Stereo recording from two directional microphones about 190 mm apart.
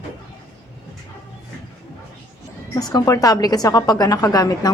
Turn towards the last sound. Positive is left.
turn(degrees=20)  # may be behind; listen again after turning